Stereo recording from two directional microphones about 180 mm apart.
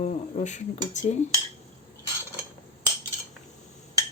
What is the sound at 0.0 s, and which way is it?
Speech, 40° left (ahead or behind).